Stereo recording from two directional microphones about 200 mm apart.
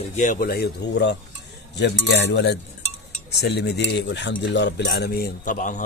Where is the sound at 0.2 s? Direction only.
45° left (ahead or behind).